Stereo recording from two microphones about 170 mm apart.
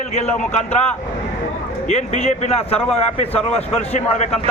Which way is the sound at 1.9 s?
40° left (ahead or behind).